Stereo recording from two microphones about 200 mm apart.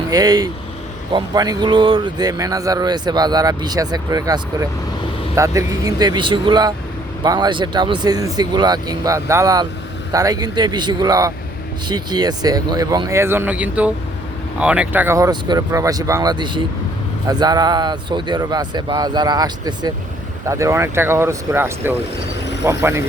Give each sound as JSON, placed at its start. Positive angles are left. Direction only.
{"t": 0.1, "sound": "speech", "side_deg": -20}